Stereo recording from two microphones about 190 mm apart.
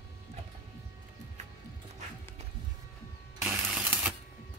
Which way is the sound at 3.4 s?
5° right (ahead or behind).